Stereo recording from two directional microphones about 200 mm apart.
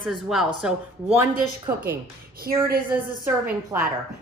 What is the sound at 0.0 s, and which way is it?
A woman's voice, centre (ahead or behind).